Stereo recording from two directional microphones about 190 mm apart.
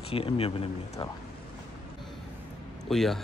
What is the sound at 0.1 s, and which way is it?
Speech, 30° left (ahead or behind).